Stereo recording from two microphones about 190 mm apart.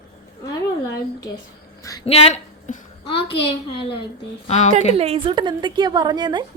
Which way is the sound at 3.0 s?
30° left (ahead or behind).